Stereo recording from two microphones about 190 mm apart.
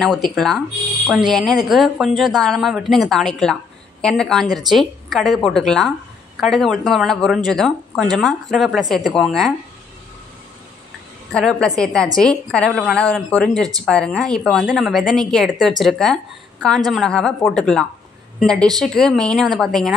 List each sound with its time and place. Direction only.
0.0 s speech: centre (ahead or behind)
11.3 s speech: 5° left (ahead or behind)